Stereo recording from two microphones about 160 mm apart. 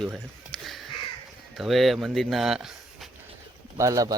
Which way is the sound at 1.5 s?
Centre (ahead or behind).